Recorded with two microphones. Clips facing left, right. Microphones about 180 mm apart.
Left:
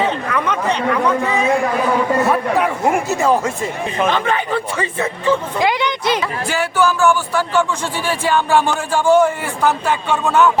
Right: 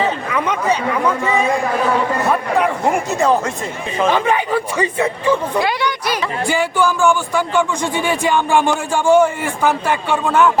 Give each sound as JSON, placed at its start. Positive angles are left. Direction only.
{"t": 0.0, "sound": "speech", "side_deg": -5}
{"t": 4.0, "sound": "a man's voice", "side_deg": -10}
{"t": 5.5, "sound": "speech", "side_deg": 20}
{"t": 6.4, "sound": "a man's voice", "side_deg": -15}